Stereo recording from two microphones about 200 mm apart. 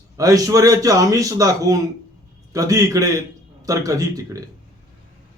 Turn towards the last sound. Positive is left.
turn(degrees=-15)  # may be behind; listen again after turning